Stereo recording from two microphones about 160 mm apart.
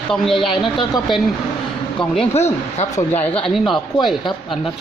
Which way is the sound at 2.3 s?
45° left (ahead or behind).